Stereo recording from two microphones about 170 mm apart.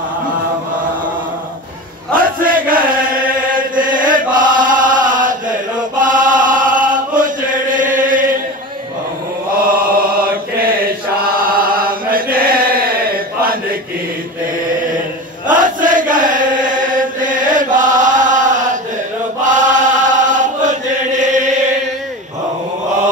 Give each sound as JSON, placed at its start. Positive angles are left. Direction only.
{"t": 2.1, "sound": "chant", "side_deg": -55}
{"t": 11.2, "sound": "chant", "side_deg": -55}
{"t": 15.4, "sound": "chant", "side_deg": -50}